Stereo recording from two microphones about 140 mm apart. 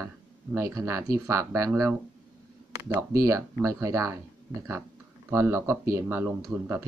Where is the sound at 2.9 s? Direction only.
20° right (ahead or behind).